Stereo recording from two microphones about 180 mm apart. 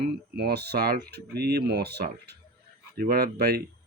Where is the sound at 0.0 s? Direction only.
60° right (ahead or behind).